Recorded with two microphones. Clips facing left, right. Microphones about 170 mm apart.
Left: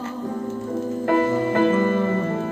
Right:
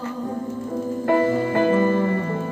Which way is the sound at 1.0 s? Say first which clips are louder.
Right 1 dB; 25° right (ahead or behind).